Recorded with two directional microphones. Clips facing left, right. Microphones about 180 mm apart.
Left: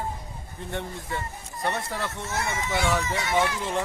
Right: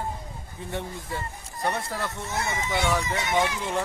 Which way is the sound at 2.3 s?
20° right (ahead or behind).